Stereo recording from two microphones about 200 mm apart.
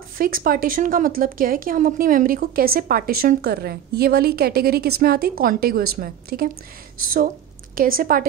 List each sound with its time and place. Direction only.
0.2 s speech: 45° right (ahead or behind)
7.7 s speech: 45° right (ahead or behind)